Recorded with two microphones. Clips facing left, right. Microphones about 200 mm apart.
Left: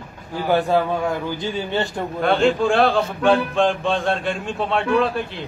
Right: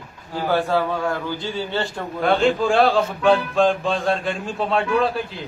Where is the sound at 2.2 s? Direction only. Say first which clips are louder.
Left 1 dB; centre (ahead or behind).